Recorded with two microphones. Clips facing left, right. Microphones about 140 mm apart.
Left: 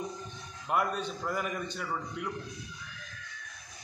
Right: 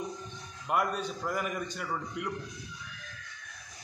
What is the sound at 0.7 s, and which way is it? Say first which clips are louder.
A man's voice: even; 5° right (ahead or behind).